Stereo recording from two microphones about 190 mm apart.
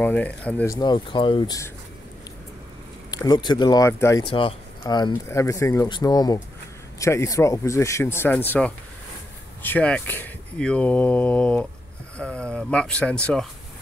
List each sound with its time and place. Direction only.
0.0 s speech: 10° left (ahead or behind)
0.7 s speech: 25° left (ahead or behind)
3.1 s speech: 20° left (ahead or behind); by 13.2 s 5° left (ahead or behind)